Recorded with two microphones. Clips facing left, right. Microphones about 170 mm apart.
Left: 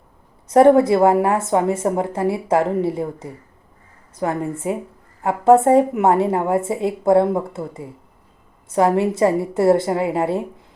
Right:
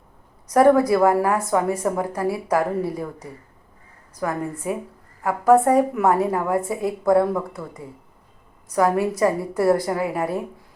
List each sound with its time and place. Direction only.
0.4 s a woman's voice: 25° left (ahead or behind)